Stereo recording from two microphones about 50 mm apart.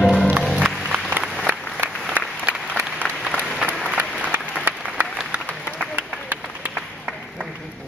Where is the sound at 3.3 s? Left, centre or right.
Left.